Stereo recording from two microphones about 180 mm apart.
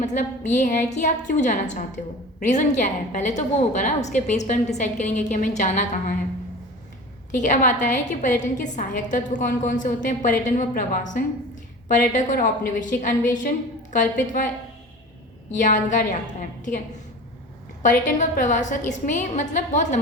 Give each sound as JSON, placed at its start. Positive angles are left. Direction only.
{"t": 0.0, "sound": "a woman's voice", "side_deg": 40}
{"t": 7.3, "sound": "a woman's voice", "side_deg": 45}
{"t": 15.6, "sound": "a woman's voice", "side_deg": 45}